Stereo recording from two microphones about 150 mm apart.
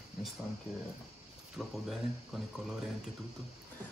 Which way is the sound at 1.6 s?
5° right (ahead or behind).